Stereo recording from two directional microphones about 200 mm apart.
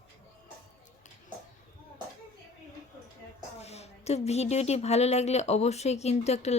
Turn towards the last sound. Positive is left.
turn(degrees=35)  # may be behind; listen again after turning